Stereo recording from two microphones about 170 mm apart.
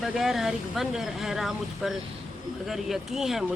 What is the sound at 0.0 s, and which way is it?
Speech, centre (ahead or behind).